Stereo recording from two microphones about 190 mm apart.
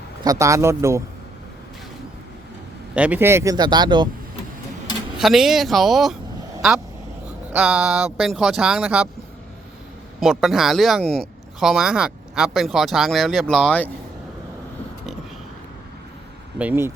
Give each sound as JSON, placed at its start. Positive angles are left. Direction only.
{"t": 0.3, "sound": "speech", "side_deg": -15}
{"t": 2.9, "sound": "a man's voice", "side_deg": -5}
{"t": 5.1, "sound": "speech", "side_deg": 0}
{"t": 10.2, "sound": "speech", "side_deg": 0}
{"t": 16.6, "sound": "speech", "side_deg": -10}